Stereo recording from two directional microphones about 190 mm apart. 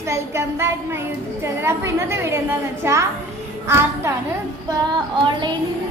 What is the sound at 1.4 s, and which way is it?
A woman's voice, 15° right (ahead or behind).